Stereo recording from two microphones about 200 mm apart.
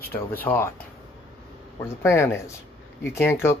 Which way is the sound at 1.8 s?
15° left (ahead or behind).